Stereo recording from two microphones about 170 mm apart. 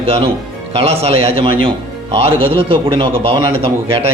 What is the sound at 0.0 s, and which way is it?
Speech, 35° right (ahead or behind).